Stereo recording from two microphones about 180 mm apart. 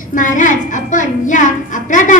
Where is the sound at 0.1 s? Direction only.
45° left (ahead or behind).